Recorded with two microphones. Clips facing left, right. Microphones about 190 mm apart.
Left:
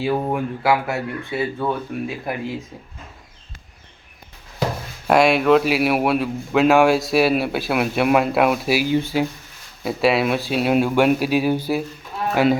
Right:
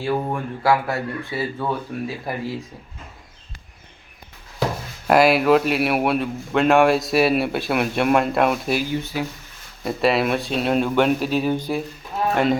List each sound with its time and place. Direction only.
0.0 s a man's voice: 5° left (ahead or behind)
5.0 s a man's voice: centre (ahead or behind)
8.9 s speech: 25° left (ahead or behind)
9.8 s a man's voice: centre (ahead or behind)